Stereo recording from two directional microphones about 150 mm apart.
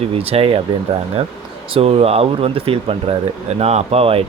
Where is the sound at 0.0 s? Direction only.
40° right (ahead or behind).